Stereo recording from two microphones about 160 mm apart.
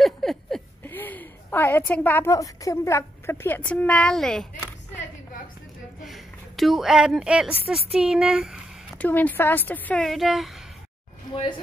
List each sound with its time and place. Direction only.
0.0 s a sound: centre (ahead or behind)
0.8 s a woman's voice: 10° left (ahead or behind)
6.0 s a woman's voice: centre (ahead or behind)
8.9 s speech: 10° left (ahead or behind)
11.3 s speech: 30° left (ahead or behind)